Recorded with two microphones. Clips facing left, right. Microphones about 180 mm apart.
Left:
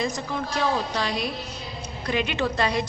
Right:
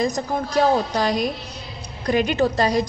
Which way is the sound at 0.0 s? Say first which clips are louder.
Right 5 dB; 45° right (ahead or behind).